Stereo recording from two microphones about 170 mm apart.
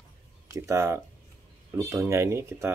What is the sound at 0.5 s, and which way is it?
Speech, 15° right (ahead or behind).